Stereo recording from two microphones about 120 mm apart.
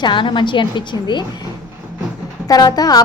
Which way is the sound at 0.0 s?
40° left (ahead or behind).